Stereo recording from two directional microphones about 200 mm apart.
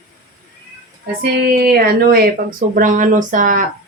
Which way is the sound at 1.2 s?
50° right (ahead or behind).